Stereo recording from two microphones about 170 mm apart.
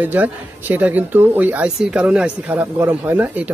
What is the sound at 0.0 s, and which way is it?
Speech, 10° right (ahead or behind).